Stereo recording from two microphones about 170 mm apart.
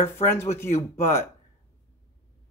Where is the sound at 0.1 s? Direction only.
15° left (ahead or behind).